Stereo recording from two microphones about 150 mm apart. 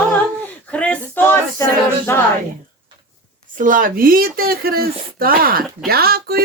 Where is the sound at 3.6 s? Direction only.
65° right (ahead or behind).